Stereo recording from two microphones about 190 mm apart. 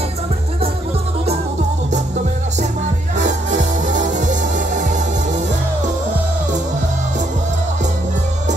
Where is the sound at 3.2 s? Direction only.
40° right (ahead or behind).